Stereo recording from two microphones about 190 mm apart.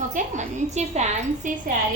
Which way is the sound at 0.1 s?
40° right (ahead or behind).